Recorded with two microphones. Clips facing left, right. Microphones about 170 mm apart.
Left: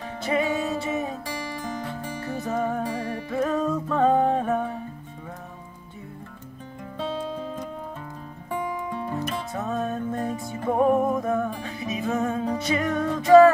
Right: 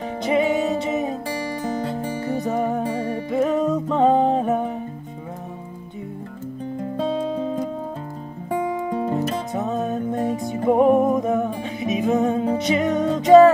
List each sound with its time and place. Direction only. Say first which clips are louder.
0.2 s music: right 5 dB; 20° right (ahead or behind)
9.5 s music: right 4 dB; 20° right (ahead or behind)